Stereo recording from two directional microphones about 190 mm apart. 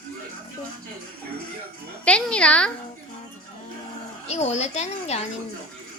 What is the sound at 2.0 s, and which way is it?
Speech, 5° left (ahead or behind).